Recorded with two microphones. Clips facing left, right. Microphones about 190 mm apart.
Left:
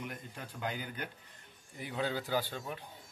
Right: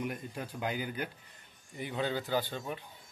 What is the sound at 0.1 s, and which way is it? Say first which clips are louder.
Speech: right 6 dB; 10° right (ahead or behind).